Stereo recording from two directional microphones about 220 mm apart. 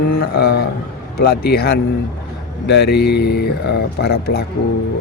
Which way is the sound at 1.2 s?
45° left (ahead or behind).